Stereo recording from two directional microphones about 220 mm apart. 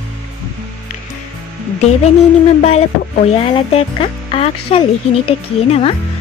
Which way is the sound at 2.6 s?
30° left (ahead or behind).